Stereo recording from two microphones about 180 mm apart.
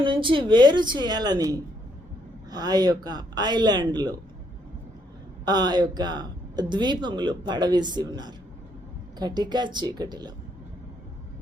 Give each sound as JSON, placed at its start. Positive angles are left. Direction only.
{"t": 0.0, "sound": "speech", "side_deg": -25}
{"t": 5.5, "sound": "speech", "side_deg": -25}